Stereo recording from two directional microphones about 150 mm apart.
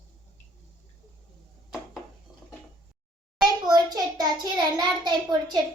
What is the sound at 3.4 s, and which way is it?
A child's voice, 25° right (ahead or behind).